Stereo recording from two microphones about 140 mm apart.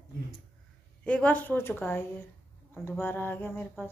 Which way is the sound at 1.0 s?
10° left (ahead or behind).